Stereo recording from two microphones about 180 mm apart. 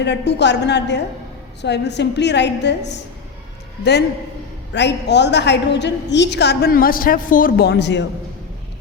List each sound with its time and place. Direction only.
0.0 s a woman's voice: 70° left (ahead or behind)
4.7 s a woman's voice: 75° left (ahead or behind)